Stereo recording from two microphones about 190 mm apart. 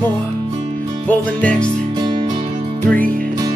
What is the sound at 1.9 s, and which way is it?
Music, 25° right (ahead or behind).